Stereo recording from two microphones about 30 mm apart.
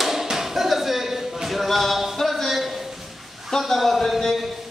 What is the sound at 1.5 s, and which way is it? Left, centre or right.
Singing, centre.